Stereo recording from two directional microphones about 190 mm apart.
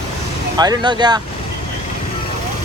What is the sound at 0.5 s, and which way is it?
Speech, 20° right (ahead or behind).